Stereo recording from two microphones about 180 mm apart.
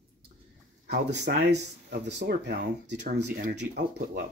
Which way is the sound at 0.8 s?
55° right (ahead or behind).